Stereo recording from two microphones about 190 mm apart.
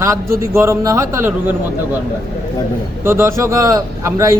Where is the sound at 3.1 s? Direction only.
15° right (ahead or behind).